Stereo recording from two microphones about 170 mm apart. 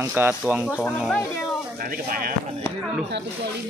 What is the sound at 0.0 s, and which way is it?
Speech, 10° right (ahead or behind).